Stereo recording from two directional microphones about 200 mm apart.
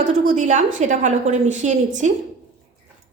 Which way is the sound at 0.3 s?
35° right (ahead or behind).